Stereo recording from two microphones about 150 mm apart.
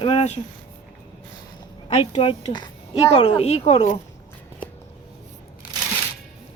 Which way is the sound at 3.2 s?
45° left (ahead or behind).